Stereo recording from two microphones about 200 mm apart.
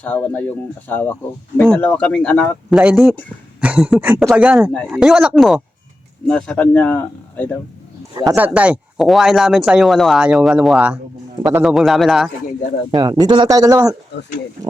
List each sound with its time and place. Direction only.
0.0 s speech: 10° left (ahead or behind); by 4.7 s 5° right (ahead or behind)
4.7 s speech: 5° left (ahead or behind)
8.3 s speech: 5° right (ahead or behind)
12.9 s speech: 20° right (ahead or behind)